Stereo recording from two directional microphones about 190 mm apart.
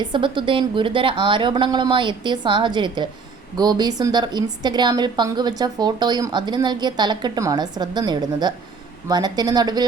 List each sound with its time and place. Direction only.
0.0 s a woman's voice: 25° right (ahead or behind)